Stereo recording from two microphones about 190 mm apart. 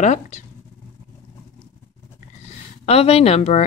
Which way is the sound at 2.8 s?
35° left (ahead or behind).